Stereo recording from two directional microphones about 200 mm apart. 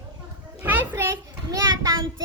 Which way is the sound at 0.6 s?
10° right (ahead or behind).